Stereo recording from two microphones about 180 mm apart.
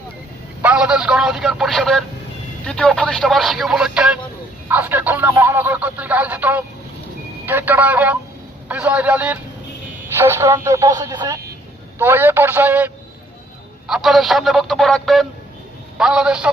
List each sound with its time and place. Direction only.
0.6 s speech: 5° right (ahead or behind)